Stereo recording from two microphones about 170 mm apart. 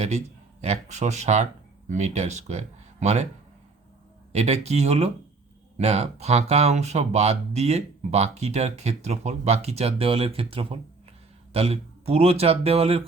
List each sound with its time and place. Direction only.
0.6 s speech: 40° right (ahead or behind)
4.3 s speech: 40° right (ahead or behind)